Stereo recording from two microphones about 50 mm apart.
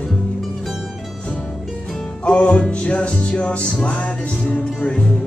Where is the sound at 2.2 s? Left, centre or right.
Left.